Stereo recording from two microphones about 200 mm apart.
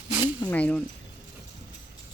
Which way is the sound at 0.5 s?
5° left (ahead or behind).